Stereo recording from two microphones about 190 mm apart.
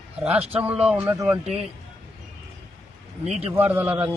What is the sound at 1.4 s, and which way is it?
Speech, 35° right (ahead or behind).